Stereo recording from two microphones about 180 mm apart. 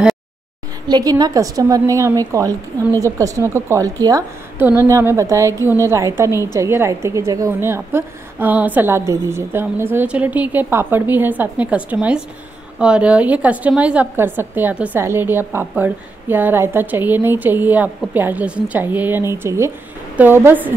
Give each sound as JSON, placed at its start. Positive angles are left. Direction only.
{"t": 0.8, "sound": "a woman's voice", "side_deg": -20}